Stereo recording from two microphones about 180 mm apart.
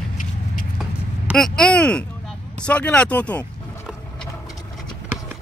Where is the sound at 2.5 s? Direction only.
5° left (ahead or behind).